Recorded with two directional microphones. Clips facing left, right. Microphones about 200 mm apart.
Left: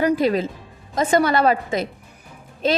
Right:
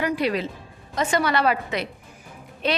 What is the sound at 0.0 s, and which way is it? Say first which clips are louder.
A woman's voice: left 5 dB; 40° left (ahead or behind).